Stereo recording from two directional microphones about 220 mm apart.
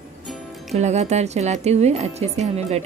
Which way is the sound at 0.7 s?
30° right (ahead or behind).